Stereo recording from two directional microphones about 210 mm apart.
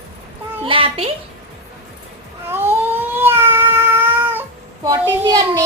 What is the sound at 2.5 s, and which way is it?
Cat, 10° right (ahead or behind).